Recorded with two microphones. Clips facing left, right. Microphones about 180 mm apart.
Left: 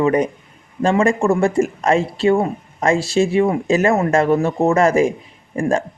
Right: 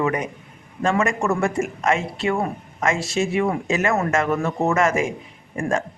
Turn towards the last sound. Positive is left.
turn(degrees=30)  # may be behind; listen again after turning